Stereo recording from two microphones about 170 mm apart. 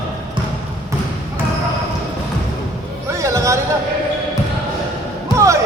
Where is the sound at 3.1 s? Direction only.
15° right (ahead or behind).